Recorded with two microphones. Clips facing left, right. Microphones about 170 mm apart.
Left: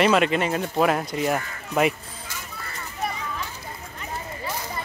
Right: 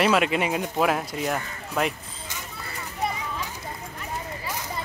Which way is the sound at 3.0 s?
20° right (ahead or behind).